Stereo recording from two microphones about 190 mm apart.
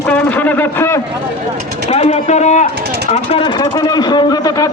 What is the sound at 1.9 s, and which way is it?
Speech, 35° left (ahead or behind).